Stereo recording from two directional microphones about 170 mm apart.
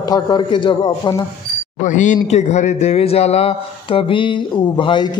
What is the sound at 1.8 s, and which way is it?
A man's voice, 45° left (ahead or behind).